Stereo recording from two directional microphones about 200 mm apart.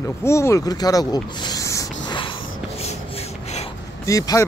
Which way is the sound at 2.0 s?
25° left (ahead or behind).